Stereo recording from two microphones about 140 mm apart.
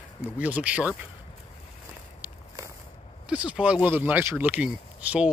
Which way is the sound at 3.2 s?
10° right (ahead or behind).